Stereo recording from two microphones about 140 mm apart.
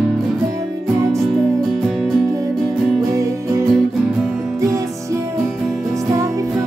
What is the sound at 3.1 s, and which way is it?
Music, 25° right (ahead or behind).